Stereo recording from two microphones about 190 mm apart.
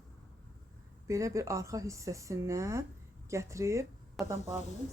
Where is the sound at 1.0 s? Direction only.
15° right (ahead or behind).